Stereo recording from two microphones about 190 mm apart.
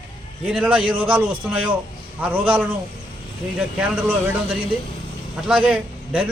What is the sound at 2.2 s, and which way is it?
Speech, 10° right (ahead or behind).